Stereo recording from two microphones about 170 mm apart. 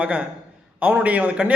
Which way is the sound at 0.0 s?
5° right (ahead or behind).